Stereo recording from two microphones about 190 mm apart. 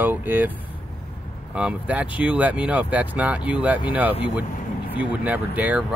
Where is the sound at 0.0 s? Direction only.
10° right (ahead or behind).